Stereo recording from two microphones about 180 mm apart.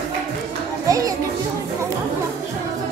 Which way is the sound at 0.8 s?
20° right (ahead or behind).